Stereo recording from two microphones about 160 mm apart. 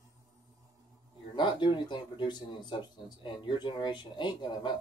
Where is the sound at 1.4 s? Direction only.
30° left (ahead or behind).